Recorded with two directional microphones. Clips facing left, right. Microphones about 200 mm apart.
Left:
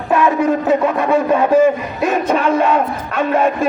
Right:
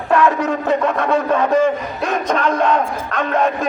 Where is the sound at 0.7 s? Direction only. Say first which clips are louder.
Left 2 dB; 10° left (ahead or behind).